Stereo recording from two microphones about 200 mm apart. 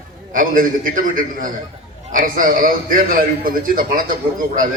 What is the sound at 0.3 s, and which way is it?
A man's voice, 45° right (ahead or behind).